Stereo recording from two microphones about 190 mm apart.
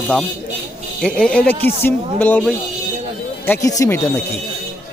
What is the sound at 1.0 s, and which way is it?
Speech, 5° left (ahead or behind).